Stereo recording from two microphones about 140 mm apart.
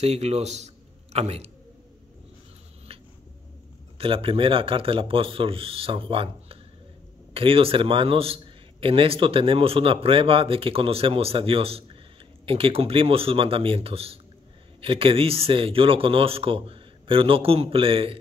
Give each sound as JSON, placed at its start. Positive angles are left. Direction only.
{"t": 0.0, "sound": "a man's voice", "side_deg": -50}
{"t": 4.0, "sound": "speech", "side_deg": -40}